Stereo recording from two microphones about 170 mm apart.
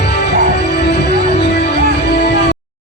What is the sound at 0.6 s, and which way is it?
Music, 80° left.